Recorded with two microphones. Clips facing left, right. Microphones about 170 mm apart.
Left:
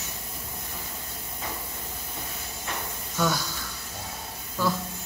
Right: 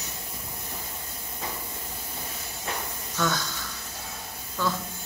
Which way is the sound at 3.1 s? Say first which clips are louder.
Left 1 dB; 10° left (ahead or behind).